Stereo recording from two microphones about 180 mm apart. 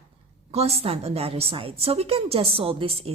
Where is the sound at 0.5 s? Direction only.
35° right (ahead or behind).